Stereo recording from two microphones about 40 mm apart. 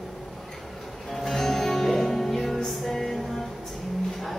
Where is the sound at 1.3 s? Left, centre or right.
Centre.